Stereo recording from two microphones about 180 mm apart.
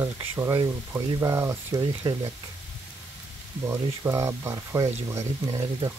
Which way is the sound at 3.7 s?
15° right (ahead or behind).